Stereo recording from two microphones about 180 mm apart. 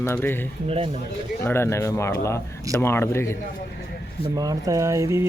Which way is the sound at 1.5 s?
15° left (ahead or behind).